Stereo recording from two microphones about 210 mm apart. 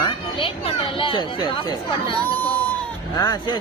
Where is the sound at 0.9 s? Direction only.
25° left (ahead or behind).